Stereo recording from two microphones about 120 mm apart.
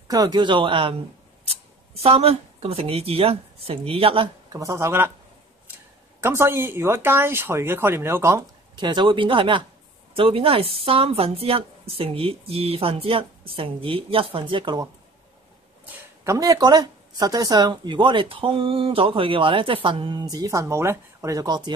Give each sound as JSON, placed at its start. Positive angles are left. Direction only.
{"t": 0.1, "sound": "speech", "side_deg": -35}
{"t": 1.4, "sound": "speech", "side_deg": -55}
{"t": 4.5, "sound": "speech", "side_deg": -25}
{"t": 6.2, "sound": "speech", "side_deg": -20}
{"t": 8.7, "sound": "a woman's voice", "side_deg": -40}
{"t": 16.3, "sound": "speech", "side_deg": -30}